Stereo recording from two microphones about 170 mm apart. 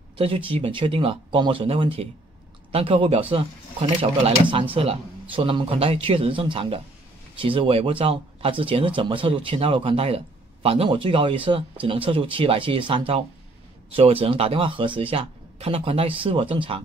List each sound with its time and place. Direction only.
0.2 s speech: 35° right (ahead or behind)